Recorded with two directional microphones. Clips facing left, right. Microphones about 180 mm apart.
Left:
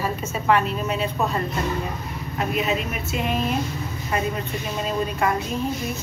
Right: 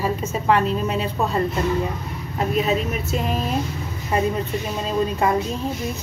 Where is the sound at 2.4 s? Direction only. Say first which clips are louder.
Right 3 dB; 35° right (ahead or behind).